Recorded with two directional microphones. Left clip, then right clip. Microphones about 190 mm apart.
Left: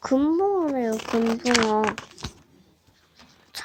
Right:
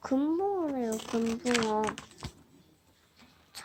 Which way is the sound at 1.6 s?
25° left (ahead or behind).